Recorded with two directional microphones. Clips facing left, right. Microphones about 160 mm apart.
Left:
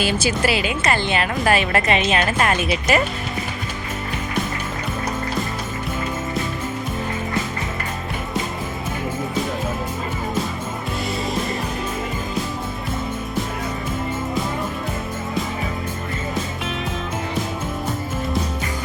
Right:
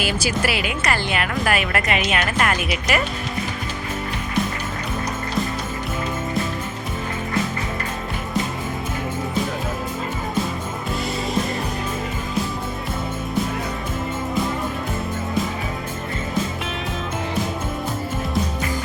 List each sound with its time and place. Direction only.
0.0 s a woman's voice: 25° left (ahead or behind)